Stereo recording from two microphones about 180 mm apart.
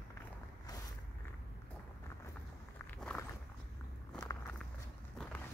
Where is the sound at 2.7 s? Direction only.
5° left (ahead or behind).